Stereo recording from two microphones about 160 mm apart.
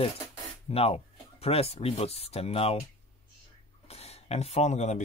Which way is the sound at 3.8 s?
40° left (ahead or behind).